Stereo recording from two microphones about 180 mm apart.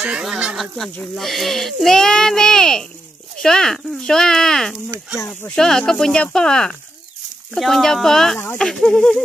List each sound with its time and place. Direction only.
0.0 s speech: 5° right (ahead or behind)
5.1 s speech: 15° left (ahead or behind)
5.6 s speech: 5° left (ahead or behind)